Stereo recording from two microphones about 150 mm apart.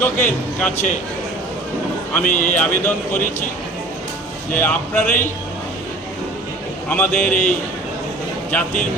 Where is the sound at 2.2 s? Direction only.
60° left (ahead or behind).